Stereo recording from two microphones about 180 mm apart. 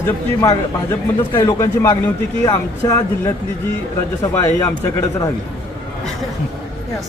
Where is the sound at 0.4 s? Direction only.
20° left (ahead or behind).